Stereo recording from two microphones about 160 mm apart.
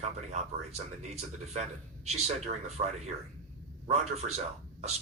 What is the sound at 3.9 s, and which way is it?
Speech, 40° right (ahead or behind).